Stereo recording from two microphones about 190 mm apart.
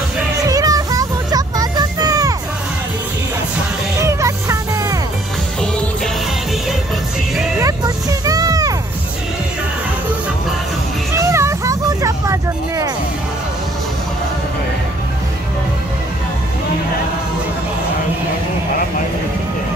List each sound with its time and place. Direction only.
0.5 s music: 20° right (ahead or behind)
4.2 s music: 15° right (ahead or behind)
7.5 s a sound: 20° right (ahead or behind)
11.1 s vehicle: 15° right (ahead or behind)